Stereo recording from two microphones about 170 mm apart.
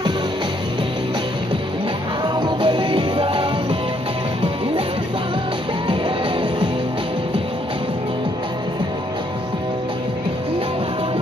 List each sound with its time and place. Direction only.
2.2 s music: 25° right (ahead or behind)